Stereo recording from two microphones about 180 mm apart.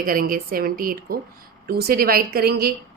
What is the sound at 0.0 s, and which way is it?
A woman's voice, 50° right (ahead or behind).